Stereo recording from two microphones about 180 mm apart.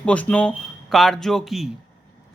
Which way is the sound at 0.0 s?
5° left (ahead or behind).